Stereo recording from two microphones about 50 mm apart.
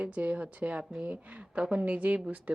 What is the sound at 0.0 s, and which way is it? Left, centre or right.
Speech, right.